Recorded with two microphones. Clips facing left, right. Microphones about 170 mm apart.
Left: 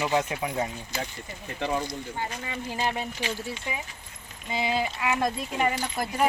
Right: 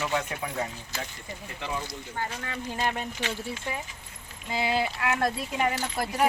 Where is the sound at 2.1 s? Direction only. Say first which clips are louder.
Right 3 dB; 10° left (ahead or behind).